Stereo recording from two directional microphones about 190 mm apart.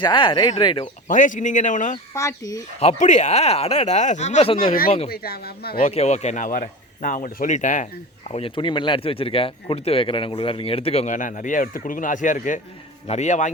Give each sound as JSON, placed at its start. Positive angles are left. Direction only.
{"t": 0.0, "sound": "speech", "side_deg": 25}
{"t": 1.0, "sound": "speech", "side_deg": 40}
{"t": 2.1, "sound": "speech", "side_deg": 15}
{"t": 2.8, "sound": "speech", "side_deg": 40}
{"t": 4.6, "sound": "speech", "side_deg": 50}
{"t": 5.8, "sound": "speech", "side_deg": 35}
{"t": 8.3, "sound": "speech", "side_deg": 30}